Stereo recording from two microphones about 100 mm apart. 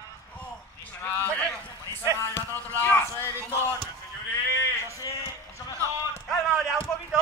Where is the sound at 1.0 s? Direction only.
15° left (ahead or behind).